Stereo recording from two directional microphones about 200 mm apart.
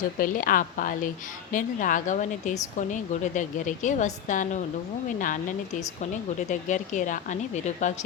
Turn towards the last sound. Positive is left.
turn(degrees=35)  # may be behind; listen again after turning